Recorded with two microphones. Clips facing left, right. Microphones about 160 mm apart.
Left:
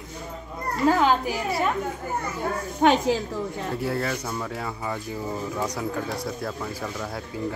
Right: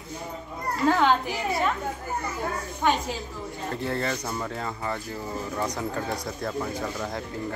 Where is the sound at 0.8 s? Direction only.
5° left (ahead or behind).